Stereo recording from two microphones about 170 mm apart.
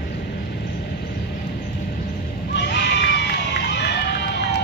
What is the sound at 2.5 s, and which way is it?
Crowd, 90° left.